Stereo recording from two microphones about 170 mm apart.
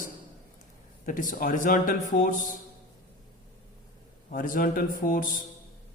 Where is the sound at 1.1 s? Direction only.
50° left (ahead or behind).